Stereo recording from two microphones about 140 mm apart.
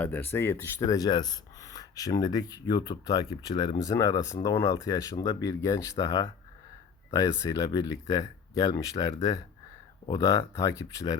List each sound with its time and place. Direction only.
0.0 s speech: 15° left (ahead or behind)